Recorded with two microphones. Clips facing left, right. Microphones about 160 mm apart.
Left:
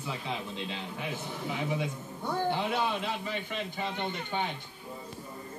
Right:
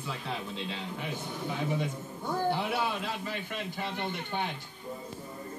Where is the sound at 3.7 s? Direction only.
5° right (ahead or behind).